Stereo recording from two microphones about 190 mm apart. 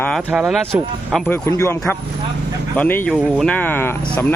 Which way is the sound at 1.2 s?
10° left (ahead or behind).